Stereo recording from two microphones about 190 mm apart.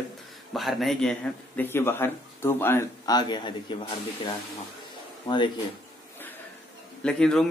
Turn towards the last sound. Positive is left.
turn(degrees=5)  # may be behind; listen again after turning